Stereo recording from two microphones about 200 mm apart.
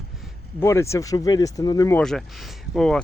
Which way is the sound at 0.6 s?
15° left (ahead or behind).